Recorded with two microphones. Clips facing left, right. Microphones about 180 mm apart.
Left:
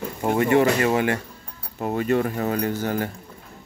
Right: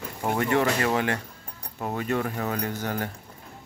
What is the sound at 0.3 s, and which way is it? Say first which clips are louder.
Speech: left 5 dB; 15° left (ahead or behind).